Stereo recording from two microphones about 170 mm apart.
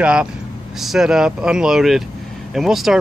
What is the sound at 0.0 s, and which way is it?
Speech, 5° right (ahead or behind).